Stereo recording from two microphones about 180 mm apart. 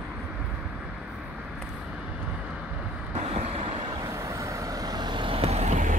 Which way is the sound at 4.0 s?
15° right (ahead or behind).